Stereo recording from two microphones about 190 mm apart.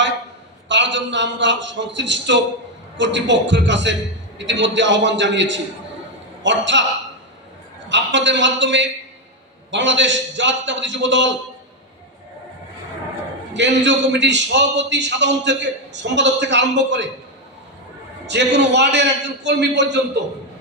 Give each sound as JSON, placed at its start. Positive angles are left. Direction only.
{"t": 0.7, "sound": "a man's voice", "side_deg": -70}
{"t": 7.9, "sound": "a man's voice", "side_deg": -70}
{"t": 13.5, "sound": "a man's voice", "side_deg": -70}
{"t": 18.3, "sound": "a man's voice", "side_deg": -65}